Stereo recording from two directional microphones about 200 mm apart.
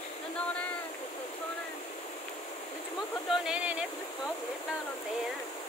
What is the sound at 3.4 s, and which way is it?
Speech, 5° right (ahead or behind).